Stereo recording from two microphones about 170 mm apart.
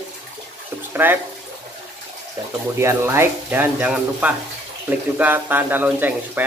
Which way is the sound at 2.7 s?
15° right (ahead or behind).